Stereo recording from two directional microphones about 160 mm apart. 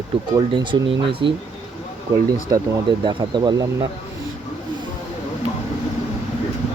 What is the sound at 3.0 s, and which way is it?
Speech, 30° right (ahead or behind).